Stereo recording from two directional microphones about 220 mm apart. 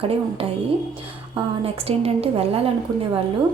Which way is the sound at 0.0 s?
25° right (ahead or behind).